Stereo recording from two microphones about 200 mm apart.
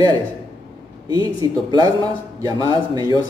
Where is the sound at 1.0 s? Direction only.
20° right (ahead or behind).